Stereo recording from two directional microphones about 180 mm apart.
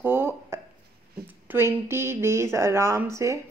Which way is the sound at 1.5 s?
10° right (ahead or behind).